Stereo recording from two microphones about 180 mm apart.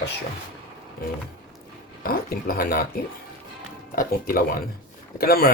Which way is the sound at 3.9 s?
55° left (ahead or behind).